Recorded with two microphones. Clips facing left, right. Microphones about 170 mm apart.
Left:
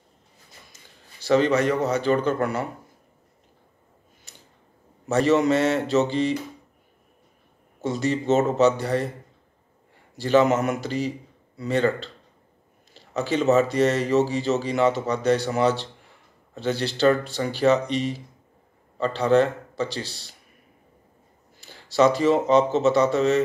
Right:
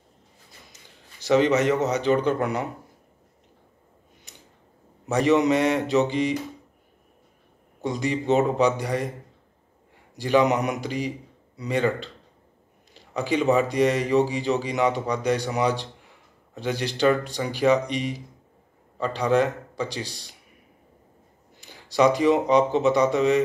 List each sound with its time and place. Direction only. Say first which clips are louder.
0.7 s a man's voice: right 1 dB; 20° right (ahead or behind)
4.3 s a sound: right 1 dB; 15° right (ahead or behind)
5.0 s speech: even; 15° right (ahead or behind)
7.8 s speech: left 1 dB; 15° right (ahead or behind)
10.1 s speech: left 2 dB; 15° right (ahead or behind)
21.5 s speech: left 1 dB; 15° right (ahead or behind)